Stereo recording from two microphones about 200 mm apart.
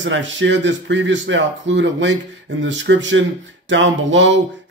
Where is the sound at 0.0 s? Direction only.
65° right (ahead or behind).